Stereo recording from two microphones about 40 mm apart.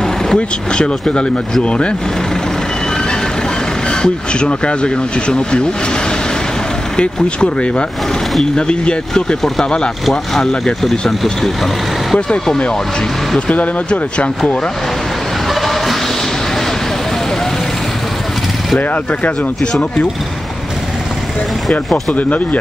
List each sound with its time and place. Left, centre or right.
0.0 s speech: centre
3.9 s speech: left
7.0 s speech: left
10.6 s speech: centre
13.5 s speech: left
15.6 s a sound: centre
22.1 s speech: left